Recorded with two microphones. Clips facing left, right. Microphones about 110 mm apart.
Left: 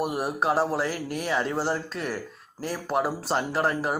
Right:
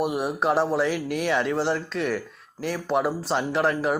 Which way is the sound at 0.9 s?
40° left (ahead or behind).